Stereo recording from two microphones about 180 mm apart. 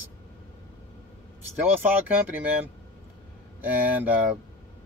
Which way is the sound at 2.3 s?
10° right (ahead or behind).